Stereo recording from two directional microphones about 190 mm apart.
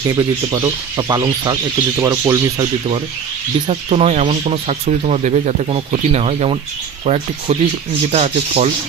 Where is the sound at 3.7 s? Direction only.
30° right (ahead or behind).